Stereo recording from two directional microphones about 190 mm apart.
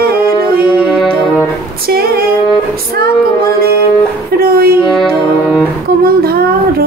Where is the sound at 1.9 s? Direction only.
50° right (ahead or behind).